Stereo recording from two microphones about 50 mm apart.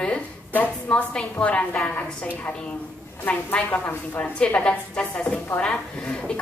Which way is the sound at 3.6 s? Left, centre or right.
Left.